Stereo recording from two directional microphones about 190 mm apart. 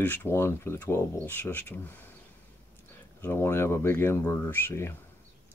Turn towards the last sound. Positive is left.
turn(degrees=10)  # may be behind; listen again after turning